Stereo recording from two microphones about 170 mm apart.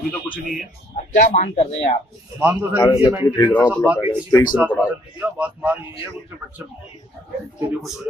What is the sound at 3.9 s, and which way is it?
A man's voice, 10° right (ahead or behind).